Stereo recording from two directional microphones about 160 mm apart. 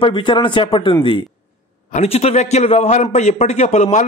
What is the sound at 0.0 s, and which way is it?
Speech, 30° left (ahead or behind).